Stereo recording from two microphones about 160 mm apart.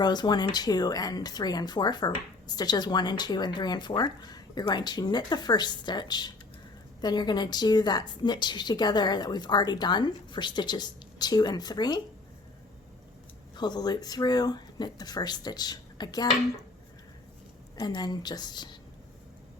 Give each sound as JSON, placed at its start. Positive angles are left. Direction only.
{"t": 0.0, "sound": "speech", "side_deg": 25}
{"t": 13.6, "sound": "speech", "side_deg": 25}
{"t": 17.7, "sound": "speech", "side_deg": 25}